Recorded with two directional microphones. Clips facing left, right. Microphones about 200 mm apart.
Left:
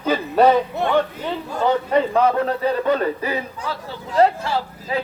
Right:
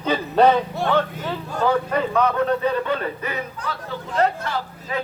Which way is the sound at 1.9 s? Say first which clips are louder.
Left 3 dB; 30° left (ahead or behind).